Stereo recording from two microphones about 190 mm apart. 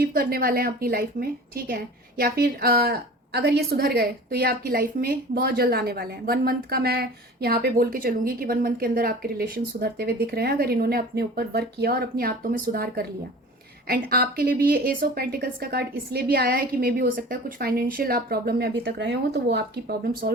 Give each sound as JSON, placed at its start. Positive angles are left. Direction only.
{"t": 0.0, "sound": "a woman's voice", "side_deg": -50}
{"t": 18.9, "sound": "speech", "side_deg": -65}